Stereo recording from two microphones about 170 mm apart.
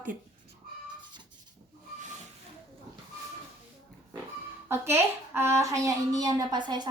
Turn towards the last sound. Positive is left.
turn(degrees=-25)  # may be behind; listen again after turning